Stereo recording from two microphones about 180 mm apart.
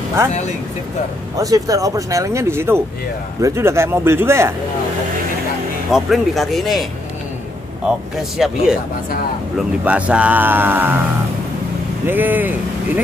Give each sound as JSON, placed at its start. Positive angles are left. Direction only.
{"t": 1.3, "sound": "speech", "side_deg": -20}
{"t": 5.9, "sound": "speech", "side_deg": 0}
{"t": 8.2, "sound": "speech", "side_deg": 0}
{"t": 12.1, "sound": "speech", "side_deg": -10}